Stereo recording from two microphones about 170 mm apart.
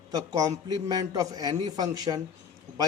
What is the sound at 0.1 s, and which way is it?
A man's voice, 20° right (ahead or behind).